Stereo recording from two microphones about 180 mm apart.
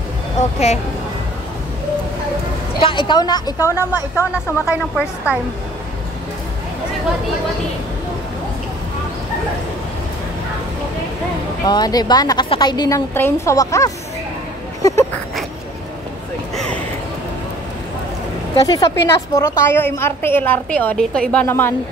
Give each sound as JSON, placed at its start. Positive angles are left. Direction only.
{"t": 0.4, "sound": "speech", "side_deg": 40}
{"t": 2.8, "sound": "a woman's voice", "side_deg": 25}
{"t": 4.6, "sound": "a woman's voice", "side_deg": -5}
{"t": 11.6, "sound": "a woman's voice", "side_deg": 20}
{"t": 14.8, "sound": "a sound", "side_deg": 20}
{"t": 16.5, "sound": "a sound", "side_deg": 5}
{"t": 18.7, "sound": "a woman's voice", "side_deg": 20}